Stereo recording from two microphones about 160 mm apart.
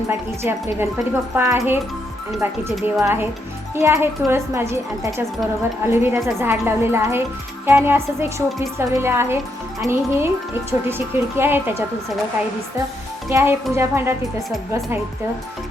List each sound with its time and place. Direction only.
0.1 s speech: 15° right (ahead or behind)
13.3 s speech: 15° right (ahead or behind)